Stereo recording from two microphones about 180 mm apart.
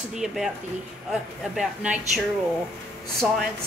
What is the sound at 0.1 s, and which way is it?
A woman's voice, centre (ahead or behind).